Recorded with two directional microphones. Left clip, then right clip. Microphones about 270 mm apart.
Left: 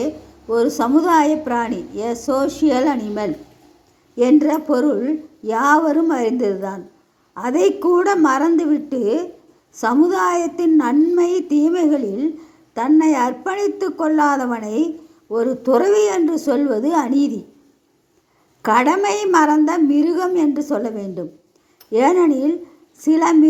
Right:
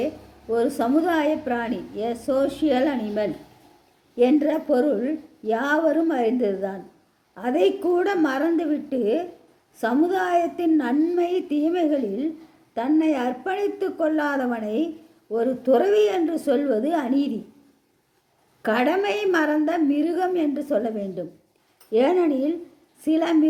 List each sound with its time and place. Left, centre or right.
0.8 s a woman's voice: centre
18.6 s a woman's voice: centre